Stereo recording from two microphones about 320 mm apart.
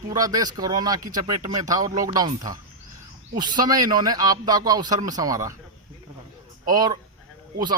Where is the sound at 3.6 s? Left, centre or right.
Centre.